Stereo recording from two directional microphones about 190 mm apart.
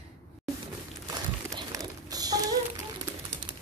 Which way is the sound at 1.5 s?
20° right (ahead or behind).